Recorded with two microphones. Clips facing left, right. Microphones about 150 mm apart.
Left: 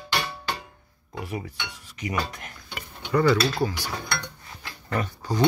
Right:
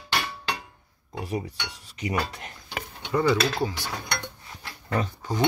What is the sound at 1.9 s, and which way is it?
Speech, 30° right (ahead or behind).